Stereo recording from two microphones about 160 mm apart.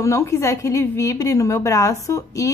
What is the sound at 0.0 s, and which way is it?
A woman's voice, 20° left (ahead or behind).